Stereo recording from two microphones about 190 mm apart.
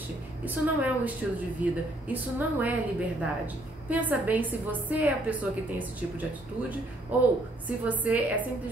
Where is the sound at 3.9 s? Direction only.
10° right (ahead or behind).